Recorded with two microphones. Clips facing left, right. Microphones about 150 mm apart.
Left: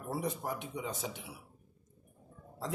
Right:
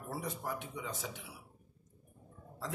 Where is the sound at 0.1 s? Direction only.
20° left (ahead or behind).